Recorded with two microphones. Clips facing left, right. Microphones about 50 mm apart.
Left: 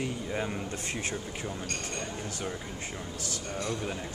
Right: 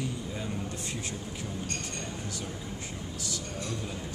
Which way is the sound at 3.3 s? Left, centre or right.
Left.